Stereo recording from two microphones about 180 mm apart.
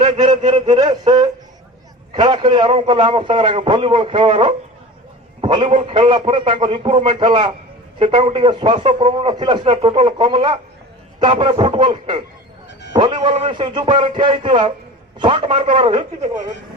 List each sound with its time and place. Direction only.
0.0 s a man's voice: 25° right (ahead or behind)
5.4 s a sound: 25° right (ahead or behind)
5.8 s a man's voice: 25° right (ahead or behind)